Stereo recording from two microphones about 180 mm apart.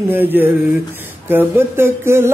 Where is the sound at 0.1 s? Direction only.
10° right (ahead or behind).